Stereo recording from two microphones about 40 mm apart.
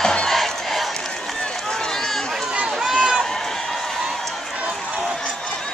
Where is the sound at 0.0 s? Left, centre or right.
Left.